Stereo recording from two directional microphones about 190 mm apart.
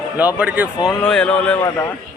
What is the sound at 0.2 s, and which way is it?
Speech, 10° right (ahead or behind).